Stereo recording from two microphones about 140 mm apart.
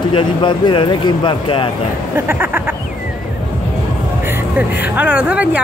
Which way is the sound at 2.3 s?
15° right (ahead or behind).